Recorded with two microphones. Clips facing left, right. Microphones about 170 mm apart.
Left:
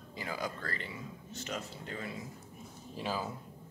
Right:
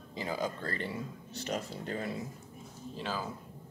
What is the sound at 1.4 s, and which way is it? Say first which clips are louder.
Speech: right 5 dB; 40° right (ahead or behind).